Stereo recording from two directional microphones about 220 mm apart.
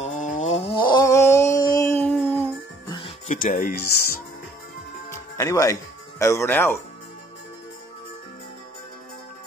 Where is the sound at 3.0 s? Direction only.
35° left (ahead or behind).